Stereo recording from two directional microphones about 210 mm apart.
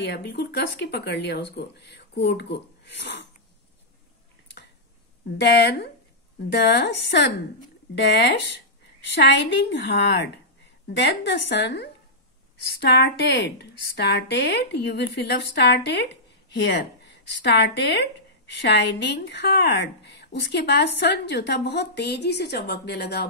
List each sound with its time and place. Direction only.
0.0 s speech: 55° left (ahead or behind)
5.4 s a woman's voice: 55° left (ahead or behind)